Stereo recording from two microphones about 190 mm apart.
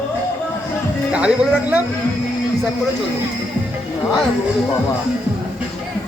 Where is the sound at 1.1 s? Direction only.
5° right (ahead or behind).